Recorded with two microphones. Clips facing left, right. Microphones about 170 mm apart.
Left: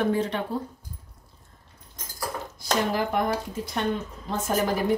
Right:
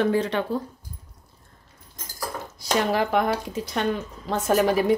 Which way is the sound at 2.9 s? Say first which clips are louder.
Right 3 dB; 80° right.